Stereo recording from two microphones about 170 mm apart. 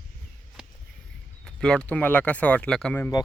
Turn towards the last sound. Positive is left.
turn(degrees=5)  # may be behind; listen again after turning